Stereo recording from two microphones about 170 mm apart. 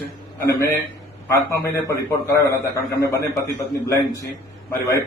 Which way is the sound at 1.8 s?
15° left (ahead or behind).